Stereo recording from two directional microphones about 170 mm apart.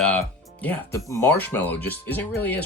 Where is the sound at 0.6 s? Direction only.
15° left (ahead or behind).